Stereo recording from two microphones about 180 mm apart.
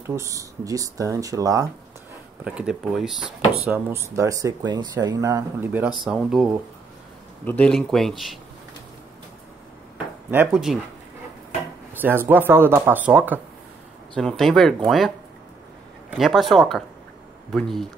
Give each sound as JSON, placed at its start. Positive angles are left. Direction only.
{"t": 0.0, "sound": "speech", "side_deg": -15}
{"t": 2.4, "sound": "speech", "side_deg": -5}
{"t": 3.7, "sound": "speech", "side_deg": -15}
{"t": 10.5, "sound": "speech", "side_deg": -5}
{"t": 11.9, "sound": "speech", "side_deg": -10}
{"t": 14.1, "sound": "speech", "side_deg": 0}